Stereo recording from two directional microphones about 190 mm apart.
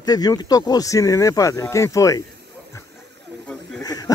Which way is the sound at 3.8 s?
20° left (ahead or behind).